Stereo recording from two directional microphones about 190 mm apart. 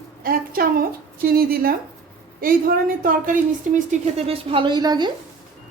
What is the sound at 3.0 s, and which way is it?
A woman's voice, 45° right (ahead or behind).